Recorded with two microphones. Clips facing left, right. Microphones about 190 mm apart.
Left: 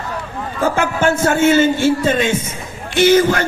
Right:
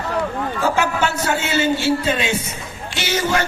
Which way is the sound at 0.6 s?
50° left (ahead or behind).